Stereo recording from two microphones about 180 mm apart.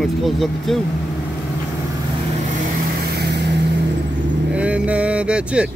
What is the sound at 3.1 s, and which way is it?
Vehicle, 65° right (ahead or behind).